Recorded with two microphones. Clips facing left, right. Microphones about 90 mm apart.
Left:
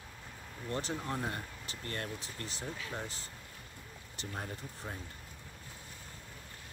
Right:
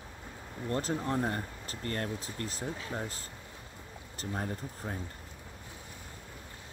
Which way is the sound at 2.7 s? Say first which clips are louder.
Right 3 dB; 30° right (ahead or behind).